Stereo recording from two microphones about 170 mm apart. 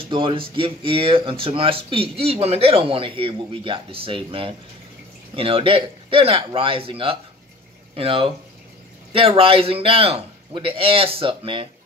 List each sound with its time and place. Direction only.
0.0 s speech: 30° right (ahead or behind)